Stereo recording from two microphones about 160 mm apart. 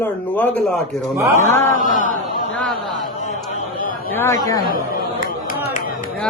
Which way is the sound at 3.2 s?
50° left (ahead or behind).